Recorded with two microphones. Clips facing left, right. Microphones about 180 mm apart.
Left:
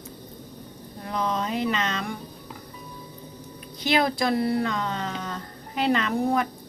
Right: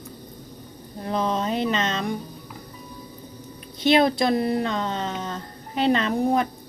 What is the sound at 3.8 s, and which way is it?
Speech, 25° right (ahead or behind).